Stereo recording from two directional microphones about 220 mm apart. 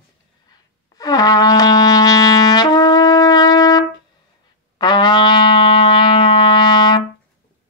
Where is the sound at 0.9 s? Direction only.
15° left (ahead or behind).